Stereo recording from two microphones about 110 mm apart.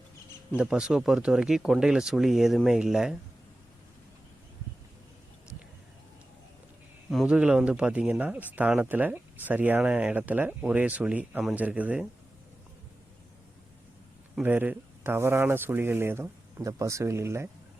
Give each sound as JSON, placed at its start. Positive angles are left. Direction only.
{"t": 0.5, "sound": "speech", "side_deg": -5}
{"t": 7.3, "sound": "speech", "side_deg": -10}
{"t": 14.4, "sound": "speech", "side_deg": -15}